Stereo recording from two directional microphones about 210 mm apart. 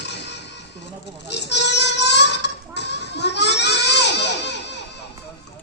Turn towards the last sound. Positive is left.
turn(degrees=55)  # may be behind; listen again after turning